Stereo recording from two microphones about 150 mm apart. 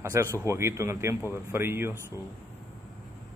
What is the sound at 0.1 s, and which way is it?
A man's voice, 20° right (ahead or behind).